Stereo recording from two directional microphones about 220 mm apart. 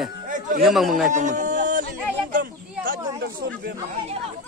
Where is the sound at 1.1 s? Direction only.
35° right (ahead or behind).